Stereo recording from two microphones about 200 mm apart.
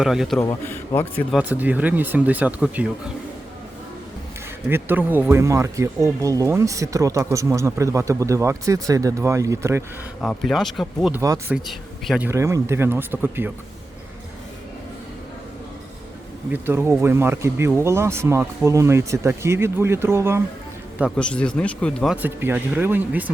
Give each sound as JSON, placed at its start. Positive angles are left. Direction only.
{"t": 0.0, "sound": "speech", "side_deg": 0}
{"t": 0.3, "sound": "a man's voice", "side_deg": 15}
{"t": 1.4, "sound": "speech", "side_deg": -10}
{"t": 4.7, "sound": "speech", "side_deg": -10}
{"t": 10.2, "sound": "speech", "side_deg": 5}
{"t": 11.2, "sound": "speech", "side_deg": -15}
{"t": 11.5, "sound": "speech", "side_deg": 0}
{"t": 16.5, "sound": "speech", "side_deg": -10}
{"t": 21.2, "sound": "speech", "side_deg": 5}